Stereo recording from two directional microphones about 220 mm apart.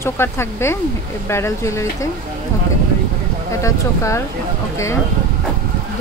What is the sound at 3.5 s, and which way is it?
Speech, 15° left (ahead or behind).